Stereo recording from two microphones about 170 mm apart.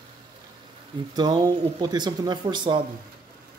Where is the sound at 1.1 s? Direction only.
25° right (ahead or behind).